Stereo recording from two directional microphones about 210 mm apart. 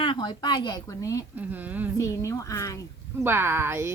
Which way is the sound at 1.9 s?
15° left (ahead or behind).